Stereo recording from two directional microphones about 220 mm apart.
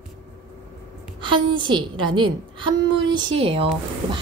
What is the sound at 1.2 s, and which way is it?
A woman's voice, 20° right (ahead or behind).